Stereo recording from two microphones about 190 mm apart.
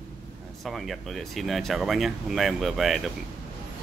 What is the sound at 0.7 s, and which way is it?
Speech, centre (ahead or behind).